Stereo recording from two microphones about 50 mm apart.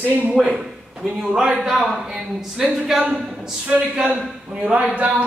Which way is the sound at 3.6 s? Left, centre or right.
Right.